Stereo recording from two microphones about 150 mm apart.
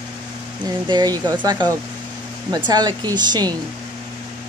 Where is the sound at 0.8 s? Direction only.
25° right (ahead or behind).